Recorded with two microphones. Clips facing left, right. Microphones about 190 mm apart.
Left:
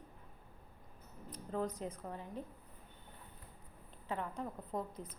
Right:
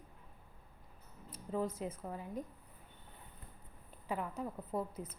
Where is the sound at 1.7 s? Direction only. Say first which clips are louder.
Right 1 dB; 5° right (ahead or behind).